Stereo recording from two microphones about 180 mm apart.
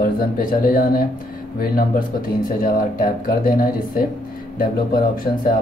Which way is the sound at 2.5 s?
50° left (ahead or behind).